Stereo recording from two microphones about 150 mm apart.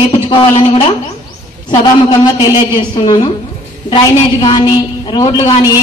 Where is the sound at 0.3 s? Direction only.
35° left (ahead or behind).